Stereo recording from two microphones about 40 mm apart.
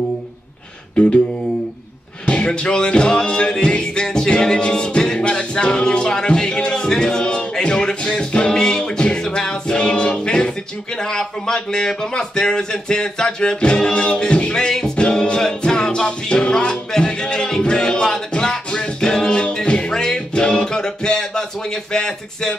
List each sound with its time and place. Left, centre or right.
2.2 s speech: left
3.6 s music: left
12.1 s speech: centre
15.0 s music: left